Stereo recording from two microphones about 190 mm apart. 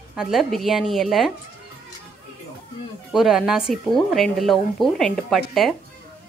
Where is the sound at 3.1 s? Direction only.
Centre (ahead or behind).